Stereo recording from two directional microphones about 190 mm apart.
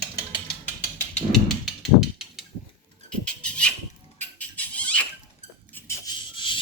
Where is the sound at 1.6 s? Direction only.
Centre (ahead or behind).